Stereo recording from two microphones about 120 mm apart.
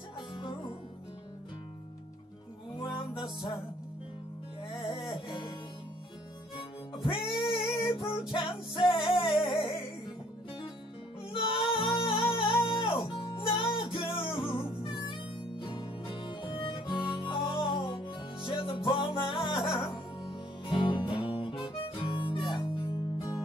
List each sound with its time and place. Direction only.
0.4 s music: 45° left (ahead or behind)
2.7 s music: 45° left (ahead or behind)
4.8 s music: 45° left (ahead or behind)
6.5 s music: 45° left (ahead or behind)
11.3 s music: 45° left (ahead or behind)
15.6 s harmonica: 45° left (ahead or behind)
19.8 s music: 45° left (ahead or behind)